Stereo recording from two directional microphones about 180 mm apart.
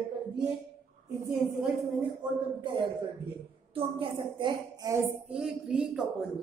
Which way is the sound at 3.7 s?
30° right (ahead or behind).